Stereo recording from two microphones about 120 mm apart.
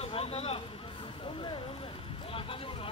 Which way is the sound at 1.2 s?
45° left (ahead or behind).